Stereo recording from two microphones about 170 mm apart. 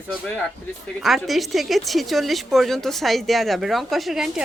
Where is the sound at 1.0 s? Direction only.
Centre (ahead or behind).